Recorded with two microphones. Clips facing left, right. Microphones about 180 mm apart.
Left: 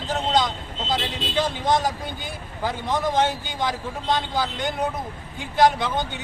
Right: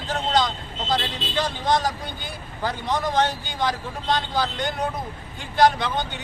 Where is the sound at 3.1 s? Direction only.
15° left (ahead or behind).